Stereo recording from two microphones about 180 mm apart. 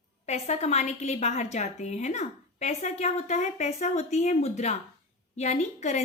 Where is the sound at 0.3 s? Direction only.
35° left (ahead or behind).